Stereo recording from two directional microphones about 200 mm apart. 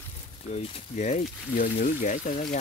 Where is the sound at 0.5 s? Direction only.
35° left (ahead or behind).